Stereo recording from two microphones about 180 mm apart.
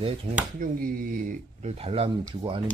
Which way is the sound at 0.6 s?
55° right (ahead or behind).